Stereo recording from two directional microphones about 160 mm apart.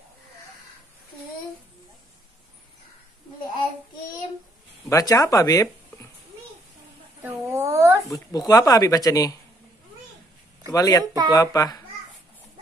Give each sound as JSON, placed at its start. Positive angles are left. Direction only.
{"t": 4.8, "sound": "speech", "side_deg": 20}
{"t": 7.2, "sound": "a sound", "side_deg": -15}
{"t": 8.1, "sound": "speech", "side_deg": 20}
{"t": 10.7, "sound": "speech", "side_deg": 20}